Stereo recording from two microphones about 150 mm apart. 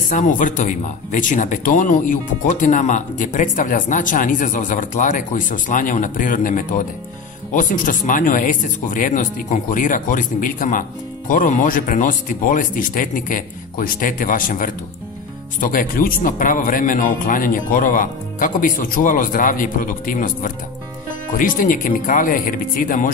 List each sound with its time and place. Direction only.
0.1 s speech: 60° left (ahead or behind)